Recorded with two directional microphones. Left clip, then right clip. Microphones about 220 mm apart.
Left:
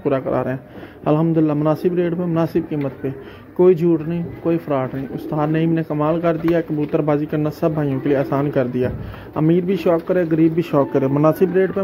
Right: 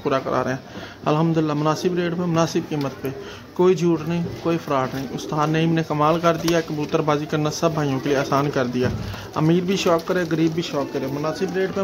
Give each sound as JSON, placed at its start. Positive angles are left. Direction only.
{"t": 0.0, "sound": "speech", "side_deg": 0}
{"t": 10.7, "sound": "speech", "side_deg": 20}